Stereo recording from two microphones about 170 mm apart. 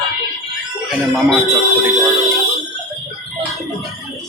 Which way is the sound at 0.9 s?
Centre (ahead or behind).